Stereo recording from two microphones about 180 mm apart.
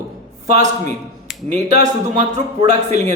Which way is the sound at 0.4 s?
40° right (ahead or behind).